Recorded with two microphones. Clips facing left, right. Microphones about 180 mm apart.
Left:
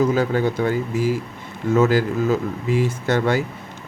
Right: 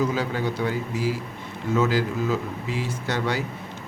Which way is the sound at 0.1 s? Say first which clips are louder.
Left 6 dB; 45° left (ahead or behind).